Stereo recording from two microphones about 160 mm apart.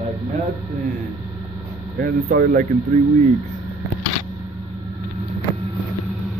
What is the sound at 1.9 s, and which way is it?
Speech, 70° right (ahead or behind).